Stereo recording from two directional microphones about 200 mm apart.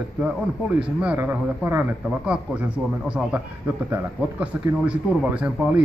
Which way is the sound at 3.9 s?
5° right (ahead or behind).